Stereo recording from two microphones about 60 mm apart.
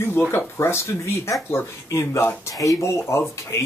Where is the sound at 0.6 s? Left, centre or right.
Left.